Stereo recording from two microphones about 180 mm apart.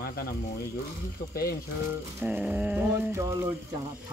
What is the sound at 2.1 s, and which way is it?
Speech, 10° right (ahead or behind).